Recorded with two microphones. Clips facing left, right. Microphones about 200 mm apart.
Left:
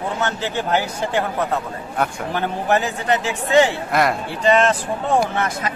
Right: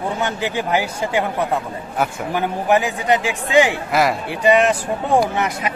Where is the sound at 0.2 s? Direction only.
10° right (ahead or behind).